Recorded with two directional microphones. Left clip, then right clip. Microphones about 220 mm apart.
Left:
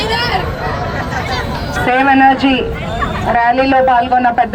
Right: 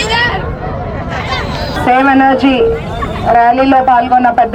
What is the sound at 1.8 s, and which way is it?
A man's voice, 55° right (ahead or behind).